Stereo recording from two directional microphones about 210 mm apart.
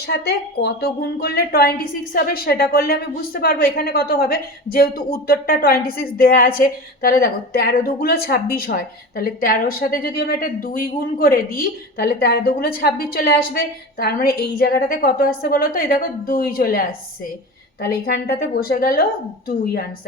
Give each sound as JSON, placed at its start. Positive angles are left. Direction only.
{"t": 0.1, "sound": "a woman's voice", "side_deg": 50}
{"t": 18.0, "sound": "a woman's voice", "side_deg": 45}